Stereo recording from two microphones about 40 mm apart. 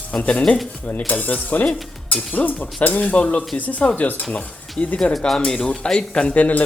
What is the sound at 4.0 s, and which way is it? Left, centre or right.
Cutlery, left.